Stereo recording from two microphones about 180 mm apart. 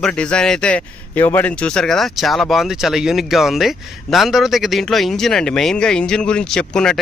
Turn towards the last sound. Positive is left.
turn(degrees=5)  # may be behind; listen again after turning